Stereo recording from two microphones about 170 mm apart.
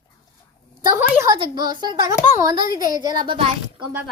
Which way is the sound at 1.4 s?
25° right (ahead or behind).